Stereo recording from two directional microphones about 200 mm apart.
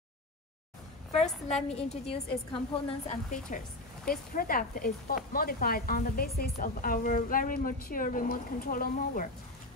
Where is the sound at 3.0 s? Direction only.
40° left (ahead or behind).